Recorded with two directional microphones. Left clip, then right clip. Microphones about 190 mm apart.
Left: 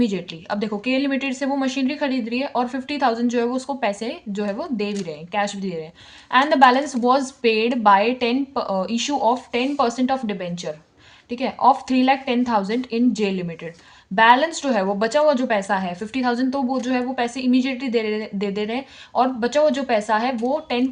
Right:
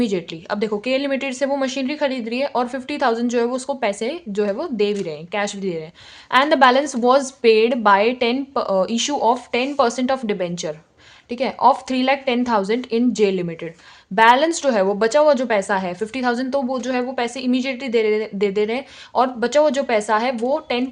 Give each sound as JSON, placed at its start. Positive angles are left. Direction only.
{"t": 0.0, "sound": "a woman's voice", "side_deg": -30}